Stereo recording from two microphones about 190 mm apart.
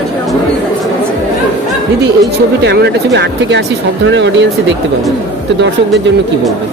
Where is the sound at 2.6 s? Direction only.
65° right (ahead or behind).